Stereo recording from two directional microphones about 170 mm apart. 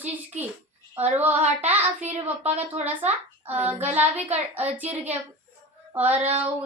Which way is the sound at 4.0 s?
40° right (ahead or behind).